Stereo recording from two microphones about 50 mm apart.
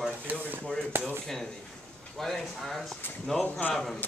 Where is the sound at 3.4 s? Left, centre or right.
Left.